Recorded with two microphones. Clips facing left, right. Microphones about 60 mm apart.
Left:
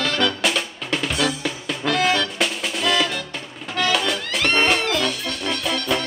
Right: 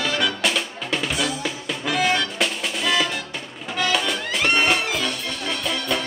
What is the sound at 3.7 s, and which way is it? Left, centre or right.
Music, centre.